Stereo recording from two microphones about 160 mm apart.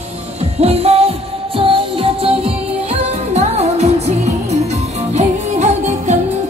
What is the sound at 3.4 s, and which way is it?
Music, 45° right (ahead or behind).